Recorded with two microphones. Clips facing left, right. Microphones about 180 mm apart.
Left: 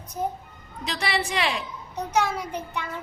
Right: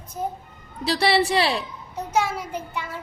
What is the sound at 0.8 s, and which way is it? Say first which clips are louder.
Speech: right 8 dB; 35° right (ahead or behind).